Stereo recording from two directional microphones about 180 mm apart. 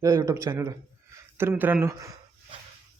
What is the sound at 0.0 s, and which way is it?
A man's voice, 15° right (ahead or behind).